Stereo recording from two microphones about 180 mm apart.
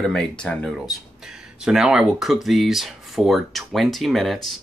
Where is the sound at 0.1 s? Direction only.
5° left (ahead or behind).